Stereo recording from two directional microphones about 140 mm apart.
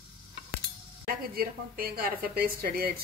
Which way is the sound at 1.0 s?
90° right.